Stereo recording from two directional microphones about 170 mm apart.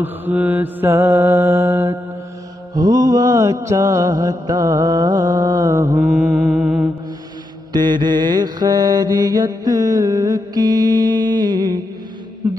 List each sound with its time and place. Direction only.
0.0 s mantra: 10° right (ahead or behind)
6.0 s music: 5° right (ahead or behind)
7.7 s mantra: 25° right (ahead or behind)